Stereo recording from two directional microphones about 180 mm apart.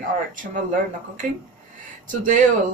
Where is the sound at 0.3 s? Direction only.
45° right (ahead or behind).